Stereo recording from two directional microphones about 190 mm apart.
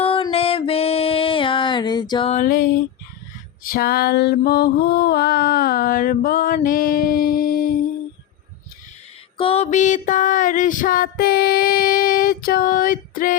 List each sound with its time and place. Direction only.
0.0 s music: 30° left (ahead or behind)
2.3 s mantra: 45° left (ahead or behind)
3.7 s mantra: 55° left (ahead or behind)
9.4 s mantra: 30° left (ahead or behind)